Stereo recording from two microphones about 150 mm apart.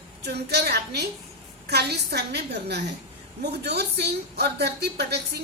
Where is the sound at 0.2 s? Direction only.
90° right.